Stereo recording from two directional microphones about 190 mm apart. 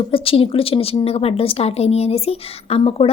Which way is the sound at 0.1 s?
30° left (ahead or behind).